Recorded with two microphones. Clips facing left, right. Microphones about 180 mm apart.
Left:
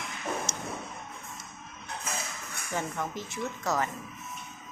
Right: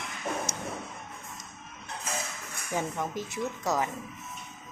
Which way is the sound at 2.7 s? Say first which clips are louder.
Right 2 dB; 15° right (ahead or behind).